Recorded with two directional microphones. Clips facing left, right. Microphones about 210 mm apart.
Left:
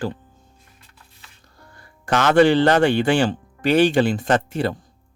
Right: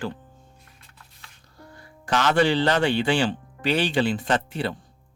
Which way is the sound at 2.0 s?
50° left (ahead or behind).